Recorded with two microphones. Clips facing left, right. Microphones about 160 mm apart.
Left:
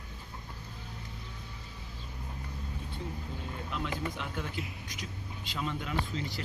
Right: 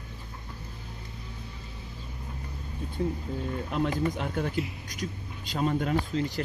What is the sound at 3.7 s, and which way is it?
Speech, 45° right (ahead or behind).